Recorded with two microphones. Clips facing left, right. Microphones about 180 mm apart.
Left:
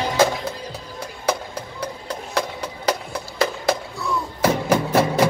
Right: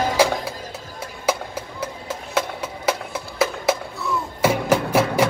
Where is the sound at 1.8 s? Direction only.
5° right (ahead or behind).